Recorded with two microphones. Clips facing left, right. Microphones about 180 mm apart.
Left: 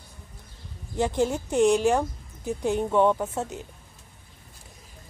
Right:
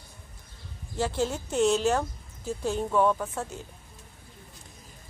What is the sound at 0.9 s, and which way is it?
A woman's voice, 15° left (ahead or behind).